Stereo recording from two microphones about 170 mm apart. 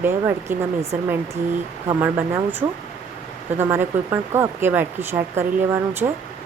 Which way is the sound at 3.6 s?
15° right (ahead or behind).